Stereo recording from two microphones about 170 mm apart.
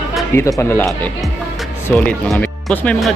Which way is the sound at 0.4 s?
15° left (ahead or behind).